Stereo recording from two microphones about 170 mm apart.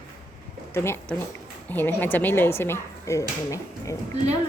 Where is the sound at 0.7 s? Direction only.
15° left (ahead or behind).